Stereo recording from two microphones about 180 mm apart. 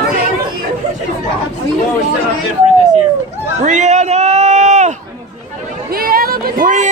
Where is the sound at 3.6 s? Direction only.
40° right (ahead or behind).